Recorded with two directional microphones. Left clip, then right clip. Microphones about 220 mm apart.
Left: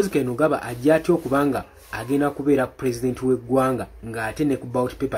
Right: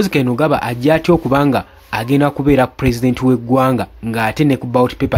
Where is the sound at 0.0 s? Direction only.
45° right (ahead or behind).